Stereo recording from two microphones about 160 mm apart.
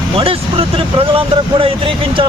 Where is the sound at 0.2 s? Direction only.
35° right (ahead or behind).